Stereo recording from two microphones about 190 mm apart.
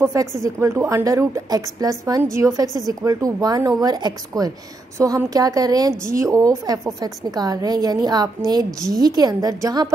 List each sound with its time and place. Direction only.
0.0 s a woman's voice: 15° right (ahead or behind)